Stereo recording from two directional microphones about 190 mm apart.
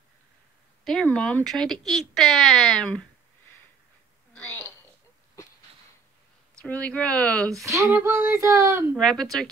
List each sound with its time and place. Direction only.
0.8 s speech: 5° left (ahead or behind)
6.6 s speech: 5° left (ahead or behind)
7.6 s speech: 15° right (ahead or behind)
8.9 s speech: 5° left (ahead or behind)